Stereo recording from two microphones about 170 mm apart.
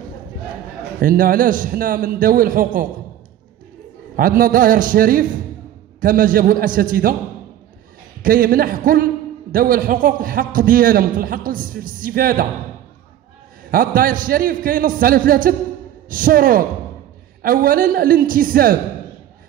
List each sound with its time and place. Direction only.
0.9 s a man's voice: 55° right (ahead or behind)
4.2 s a man's voice: 55° right (ahead or behind)
8.2 s a man's voice: 55° right (ahead or behind)
13.7 s a man's voice: 55° right (ahead or behind)